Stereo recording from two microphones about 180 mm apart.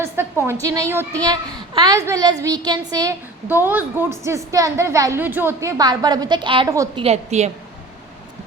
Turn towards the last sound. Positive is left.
turn(degrees=-35)  # may be behind; listen again after turning